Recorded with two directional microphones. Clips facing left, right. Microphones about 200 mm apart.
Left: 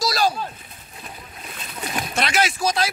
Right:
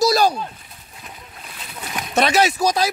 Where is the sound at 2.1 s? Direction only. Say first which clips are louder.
Right 7 dB; 40° right (ahead or behind).